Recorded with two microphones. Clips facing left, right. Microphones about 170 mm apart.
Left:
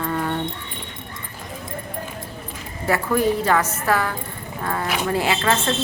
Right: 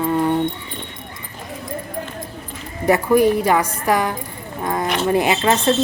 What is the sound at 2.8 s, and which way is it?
Speech, 15° right (ahead or behind).